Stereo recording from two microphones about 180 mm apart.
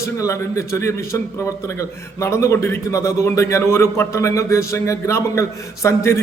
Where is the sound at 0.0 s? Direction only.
15° left (ahead or behind).